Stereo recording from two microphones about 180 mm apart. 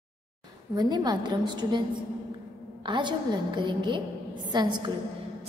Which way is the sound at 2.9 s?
25° right (ahead or behind).